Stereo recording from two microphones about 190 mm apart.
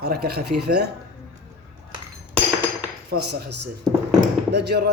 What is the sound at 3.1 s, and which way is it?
A man's voice, 55° right (ahead or behind).